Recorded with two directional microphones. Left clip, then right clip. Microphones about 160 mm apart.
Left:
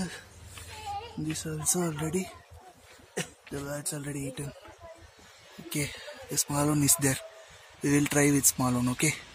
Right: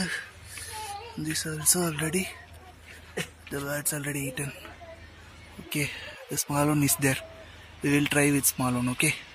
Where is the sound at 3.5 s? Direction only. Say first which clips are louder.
Right 6 dB; 20° right (ahead or behind).